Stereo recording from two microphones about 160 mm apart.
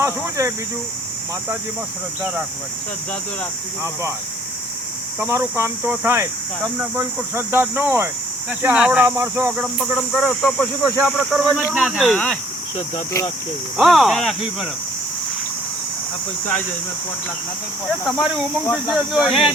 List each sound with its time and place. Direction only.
0.0 s speech: 20° right (ahead or behind)
5.3 s cricket: 15° right (ahead or behind)
11.7 s speech: 5° right (ahead or behind)
13.7 s speech: centre (ahead or behind)
18.0 s speech: 5° right (ahead or behind)